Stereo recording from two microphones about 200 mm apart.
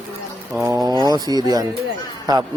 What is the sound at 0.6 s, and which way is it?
A man's voice, 15° right (ahead or behind).